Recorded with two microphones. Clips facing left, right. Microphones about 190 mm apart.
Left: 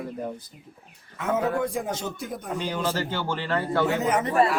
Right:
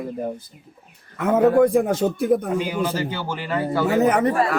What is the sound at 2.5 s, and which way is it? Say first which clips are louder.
Speech: right 4 dB; 10° right (ahead or behind).